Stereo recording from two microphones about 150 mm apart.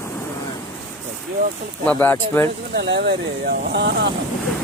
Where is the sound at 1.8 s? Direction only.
10° left (ahead or behind).